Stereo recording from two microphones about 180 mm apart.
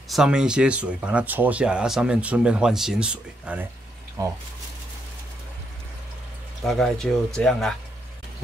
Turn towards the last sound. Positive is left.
turn(degrees=0)  # may be behind; listen again after turning